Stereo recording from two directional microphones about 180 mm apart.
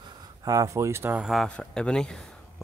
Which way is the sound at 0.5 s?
20° right (ahead or behind).